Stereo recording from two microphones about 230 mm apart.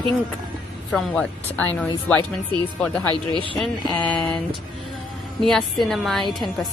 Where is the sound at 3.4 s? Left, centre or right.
Right.